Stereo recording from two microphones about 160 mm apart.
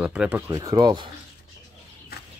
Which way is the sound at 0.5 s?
20° right (ahead or behind).